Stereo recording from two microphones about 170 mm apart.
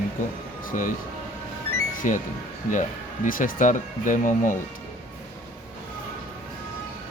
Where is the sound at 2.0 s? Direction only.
50° left (ahead or behind).